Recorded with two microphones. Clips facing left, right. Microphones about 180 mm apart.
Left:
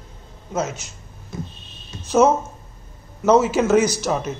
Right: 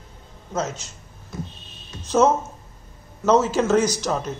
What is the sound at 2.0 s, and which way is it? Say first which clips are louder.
Speech: left 2 dB; 10° left (ahead or behind).